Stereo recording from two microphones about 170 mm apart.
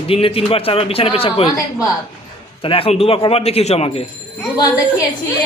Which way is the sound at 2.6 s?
35° left (ahead or behind).